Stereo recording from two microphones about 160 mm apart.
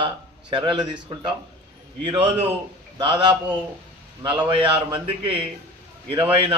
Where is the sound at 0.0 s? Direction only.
30° right (ahead or behind).